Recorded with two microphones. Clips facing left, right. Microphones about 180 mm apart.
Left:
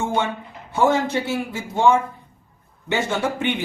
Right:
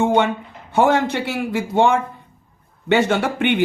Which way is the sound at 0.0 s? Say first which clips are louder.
Right 6 dB; 65° right (ahead or behind).